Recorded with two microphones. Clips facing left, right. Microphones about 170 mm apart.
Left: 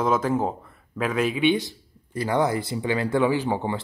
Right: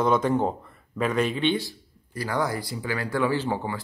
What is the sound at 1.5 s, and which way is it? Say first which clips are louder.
Speech: left 2 dB; 20° left (ahead or behind).